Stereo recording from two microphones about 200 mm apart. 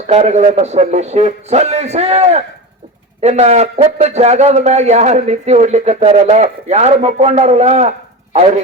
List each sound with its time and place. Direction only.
0.1 s a man's voice: 35° right (ahead or behind)